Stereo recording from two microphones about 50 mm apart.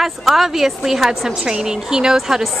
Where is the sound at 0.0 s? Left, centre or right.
Centre.